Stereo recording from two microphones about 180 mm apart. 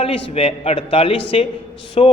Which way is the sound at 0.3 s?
35° left (ahead or behind).